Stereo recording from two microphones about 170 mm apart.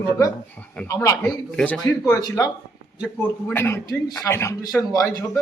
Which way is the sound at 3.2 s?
10° left (ahead or behind).